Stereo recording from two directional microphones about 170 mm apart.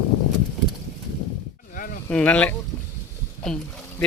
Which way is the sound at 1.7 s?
50° left (ahead or behind).